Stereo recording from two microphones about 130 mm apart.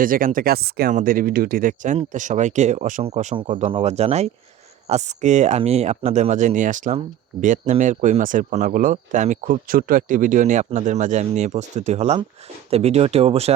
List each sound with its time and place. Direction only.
0.0 s speech: 90° right
3.0 s speech: 60° right (ahead or behind)